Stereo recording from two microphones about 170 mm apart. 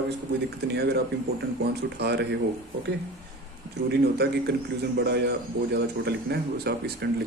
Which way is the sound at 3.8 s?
70° right (ahead or behind).